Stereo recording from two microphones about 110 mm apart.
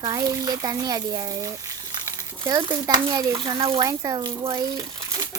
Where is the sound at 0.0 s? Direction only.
35° right (ahead or behind).